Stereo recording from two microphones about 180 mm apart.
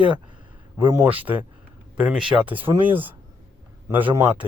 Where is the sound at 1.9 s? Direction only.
5° right (ahead or behind).